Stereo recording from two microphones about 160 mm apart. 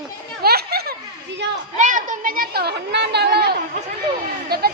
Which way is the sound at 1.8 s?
55° right (ahead or behind).